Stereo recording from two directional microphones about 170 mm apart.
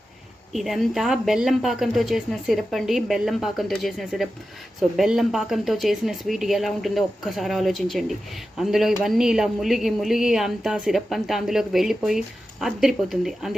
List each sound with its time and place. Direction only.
0.5 s speech: centre (ahead or behind)